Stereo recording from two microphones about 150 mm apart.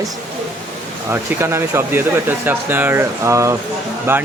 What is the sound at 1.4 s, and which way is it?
Speech, 15° right (ahead or behind).